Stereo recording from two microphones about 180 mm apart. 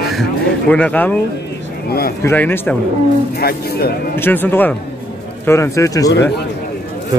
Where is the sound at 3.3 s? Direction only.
60° left (ahead or behind).